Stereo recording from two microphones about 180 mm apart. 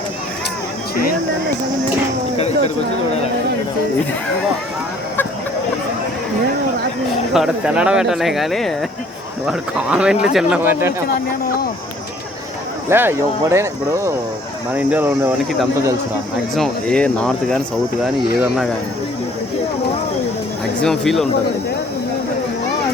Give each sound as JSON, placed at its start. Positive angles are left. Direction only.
{"t": 7.3, "sound": "speech", "side_deg": -5}
{"t": 12.9, "sound": "speech", "side_deg": -10}
{"t": 16.6, "sound": "speech", "side_deg": 5}
{"t": 20.8, "sound": "speech", "side_deg": 5}